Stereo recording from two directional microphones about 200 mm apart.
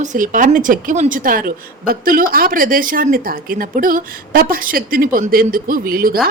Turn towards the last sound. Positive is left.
turn(degrees=-45)  # may be behind; listen again after turning